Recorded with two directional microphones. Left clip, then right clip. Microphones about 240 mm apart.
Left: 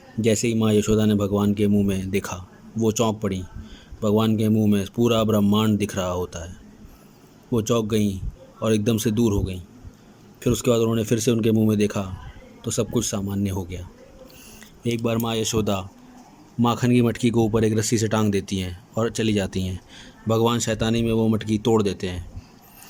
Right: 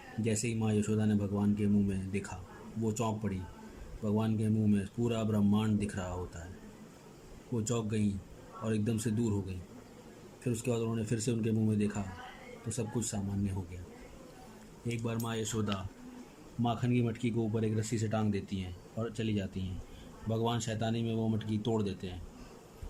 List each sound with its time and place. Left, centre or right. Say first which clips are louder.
0.2 s speech: left 14 dB; left
7.5 s speech: left 14 dB; left
10.4 s speech: left 14 dB; left
14.8 s speech: left 14 dB; left